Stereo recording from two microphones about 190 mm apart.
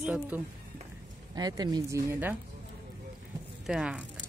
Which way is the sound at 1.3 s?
20° right (ahead or behind).